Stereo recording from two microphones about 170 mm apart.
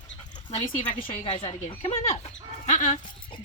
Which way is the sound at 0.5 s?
35° left (ahead or behind).